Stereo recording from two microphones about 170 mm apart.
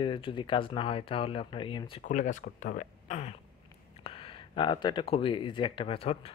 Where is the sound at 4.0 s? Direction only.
30° left (ahead or behind).